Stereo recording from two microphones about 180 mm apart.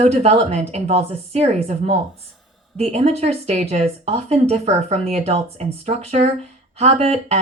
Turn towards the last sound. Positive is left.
turn(degrees=-35)  # may be behind; listen again after turning